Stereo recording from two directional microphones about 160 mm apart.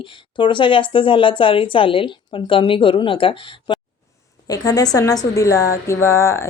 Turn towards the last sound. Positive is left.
turn(degrees=15)  # may be behind; listen again after turning